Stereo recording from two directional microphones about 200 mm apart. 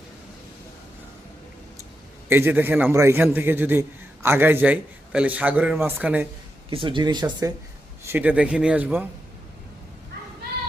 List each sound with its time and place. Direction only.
2.3 s a man's voice: 10° right (ahead or behind)
6.7 s speech: 25° right (ahead or behind)
8.0 s a man's voice: 10° right (ahead or behind)